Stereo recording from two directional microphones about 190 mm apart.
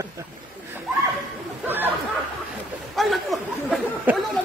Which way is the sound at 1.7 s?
10° right (ahead or behind).